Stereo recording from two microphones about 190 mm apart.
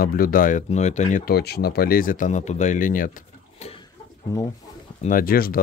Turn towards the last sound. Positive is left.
turn(degrees=50)  # may be behind; listen again after turning